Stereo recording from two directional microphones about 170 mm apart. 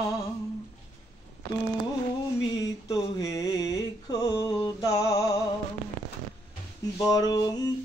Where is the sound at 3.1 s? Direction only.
20° left (ahead or behind).